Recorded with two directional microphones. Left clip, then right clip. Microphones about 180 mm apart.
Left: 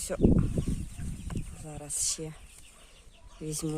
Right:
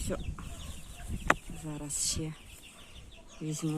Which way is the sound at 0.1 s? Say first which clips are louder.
Left 12 dB; 75° left (ahead or behind).